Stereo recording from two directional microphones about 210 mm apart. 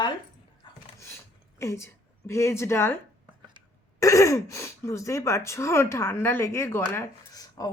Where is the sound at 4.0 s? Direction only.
15° left (ahead or behind).